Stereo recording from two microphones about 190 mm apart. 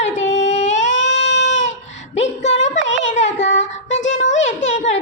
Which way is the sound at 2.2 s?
35° left (ahead or behind).